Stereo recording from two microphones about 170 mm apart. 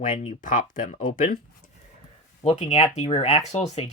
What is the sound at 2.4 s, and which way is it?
Speech, 40° left (ahead or behind).